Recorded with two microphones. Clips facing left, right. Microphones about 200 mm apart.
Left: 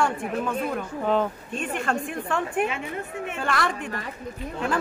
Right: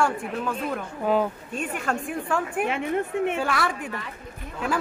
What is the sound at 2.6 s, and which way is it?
Speech, 55° right (ahead or behind).